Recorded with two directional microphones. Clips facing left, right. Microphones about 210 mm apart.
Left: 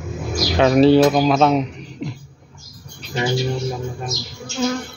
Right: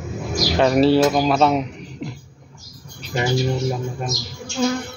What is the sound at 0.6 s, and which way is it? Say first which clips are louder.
Speech: left 3 dB; centre (ahead or behind).